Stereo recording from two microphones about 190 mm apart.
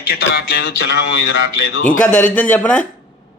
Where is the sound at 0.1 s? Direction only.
60° left (ahead or behind).